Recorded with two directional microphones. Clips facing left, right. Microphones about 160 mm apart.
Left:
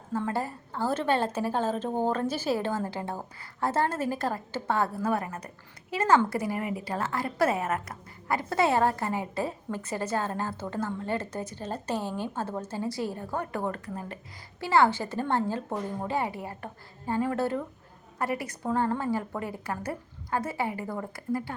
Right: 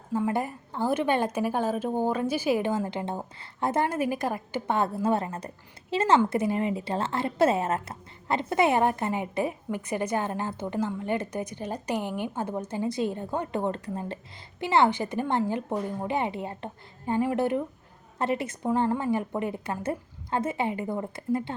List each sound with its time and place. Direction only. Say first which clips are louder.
0.1 s a woman's voice: right 3 dB; 15° right (ahead or behind)